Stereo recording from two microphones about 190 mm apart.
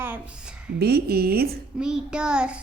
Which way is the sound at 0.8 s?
55° right (ahead or behind).